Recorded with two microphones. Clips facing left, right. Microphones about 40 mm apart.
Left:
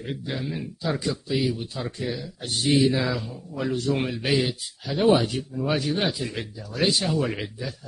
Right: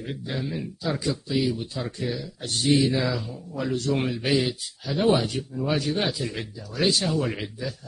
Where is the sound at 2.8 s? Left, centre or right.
Centre.